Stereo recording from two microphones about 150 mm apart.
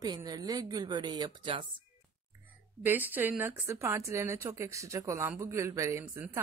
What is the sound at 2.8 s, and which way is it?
A woman's voice, 10° right (ahead or behind).